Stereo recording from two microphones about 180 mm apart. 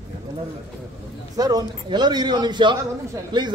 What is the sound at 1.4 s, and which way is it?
A man's voice, 20° right (ahead or behind).